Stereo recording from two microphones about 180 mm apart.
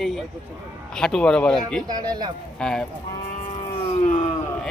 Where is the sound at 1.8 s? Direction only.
20° right (ahead or behind).